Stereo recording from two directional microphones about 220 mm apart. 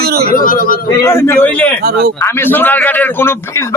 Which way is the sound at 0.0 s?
45° right (ahead or behind).